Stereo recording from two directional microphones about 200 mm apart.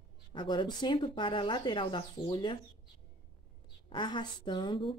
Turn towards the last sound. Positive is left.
turn(degrees=25)  # may be behind; listen again after turning